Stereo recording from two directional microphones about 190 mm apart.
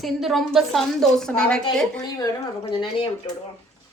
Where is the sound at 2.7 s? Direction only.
25° left (ahead or behind).